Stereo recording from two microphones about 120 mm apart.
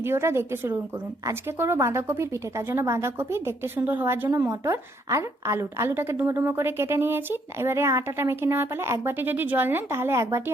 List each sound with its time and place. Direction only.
0.0 s a woman's voice: 20° right (ahead or behind)